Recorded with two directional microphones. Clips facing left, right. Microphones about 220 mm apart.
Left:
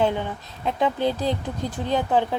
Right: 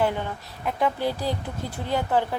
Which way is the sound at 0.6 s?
20° left (ahead or behind).